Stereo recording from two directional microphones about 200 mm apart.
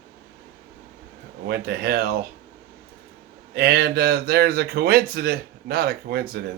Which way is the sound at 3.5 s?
50° right (ahead or behind).